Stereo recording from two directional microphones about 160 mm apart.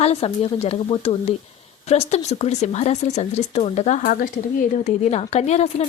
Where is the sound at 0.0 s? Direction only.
40° left (ahead or behind).